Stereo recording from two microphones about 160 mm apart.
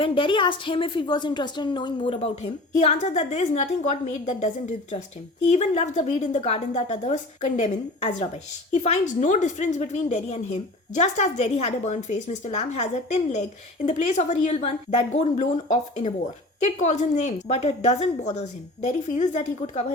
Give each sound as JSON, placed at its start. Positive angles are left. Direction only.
{"t": 0.0, "sound": "a woman's voice", "side_deg": 30}
{"t": 2.2, "sound": "a woman's voice", "side_deg": 45}